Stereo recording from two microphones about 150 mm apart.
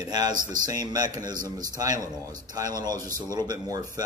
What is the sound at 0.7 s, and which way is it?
A man's voice, 25° right (ahead or behind).